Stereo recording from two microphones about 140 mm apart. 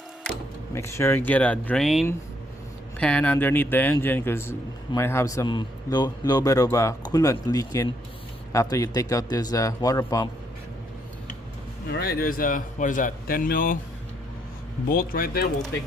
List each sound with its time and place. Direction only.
0.7 s speech: 20° left (ahead or behind)
12.2 s speech: 90° left
14.8 s speech: 90° left